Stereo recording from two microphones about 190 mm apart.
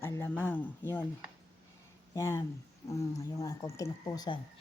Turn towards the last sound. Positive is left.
turn(degrees=20)  # may be behind; listen again after turning